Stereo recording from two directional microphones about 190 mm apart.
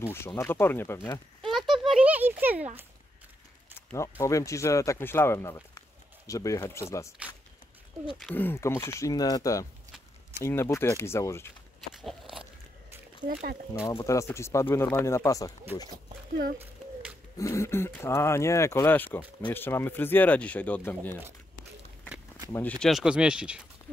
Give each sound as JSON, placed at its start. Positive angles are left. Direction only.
{"t": 0.0, "sound": "speech", "side_deg": 15}
{"t": 1.4, "sound": "a child's voice", "side_deg": 0}
{"t": 4.2, "sound": "speech", "side_deg": 15}
{"t": 8.2, "sound": "speech", "side_deg": 5}
{"t": 11.9, "sound": "a sound", "side_deg": 0}
{"t": 13.2, "sound": "speech", "side_deg": -50}
{"t": 13.7, "sound": "speech", "side_deg": 15}
{"t": 17.4, "sound": "speech", "side_deg": 15}
{"t": 22.5, "sound": "speech", "side_deg": 10}